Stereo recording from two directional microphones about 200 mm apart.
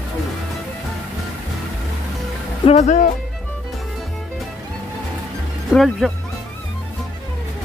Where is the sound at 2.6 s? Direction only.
35° left (ahead or behind).